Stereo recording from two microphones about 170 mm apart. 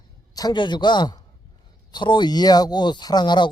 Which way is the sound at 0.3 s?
25° left (ahead or behind).